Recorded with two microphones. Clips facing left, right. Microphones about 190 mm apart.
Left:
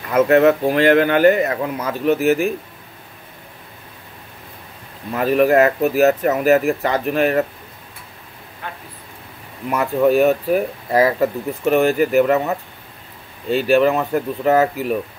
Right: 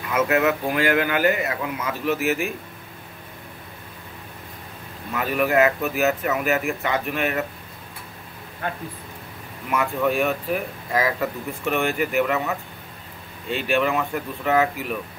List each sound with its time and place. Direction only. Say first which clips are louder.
0.1 s speech: left 8 dB; 35° left (ahead or behind)
5.1 s speech: left 7 dB; 35° left (ahead or behind)
9.7 s speech: left 6 dB; 35° left (ahead or behind)